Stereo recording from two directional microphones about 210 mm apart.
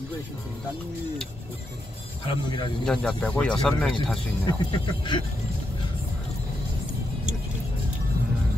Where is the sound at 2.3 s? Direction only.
25° left (ahead or behind).